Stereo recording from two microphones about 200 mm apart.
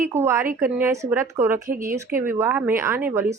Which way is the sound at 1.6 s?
45° right (ahead or behind).